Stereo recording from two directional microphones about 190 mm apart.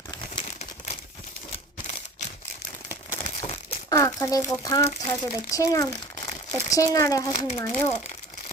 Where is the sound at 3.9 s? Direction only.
15° left (ahead or behind).